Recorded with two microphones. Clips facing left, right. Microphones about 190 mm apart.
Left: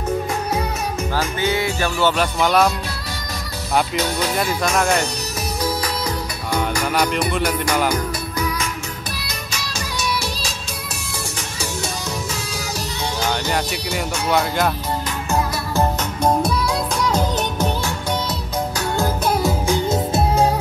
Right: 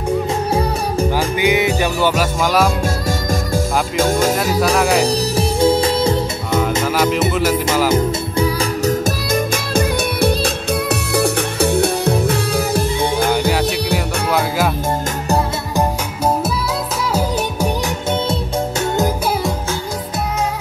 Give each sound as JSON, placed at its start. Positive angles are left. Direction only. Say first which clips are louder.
{"t": 1.1, "sound": "music", "louder": "right 3 dB", "side_deg": -15}
{"t": 3.9, "sound": "speech", "louder": "right 6 dB", "side_deg": -50}
{"t": 5.6, "sound": "music", "louder": "right 10 dB", "side_deg": -25}
{"t": 7.2, "sound": "music", "louder": "right 4 dB", "side_deg": -5}
{"t": 7.9, "sound": "music", "louder": "right 7 dB", "side_deg": -30}
{"t": 8.8, "sound": "music", "louder": "right 13 dB", "side_deg": -50}
{"t": 13.9, "sound": "music", "louder": "left 3 dB", "side_deg": 0}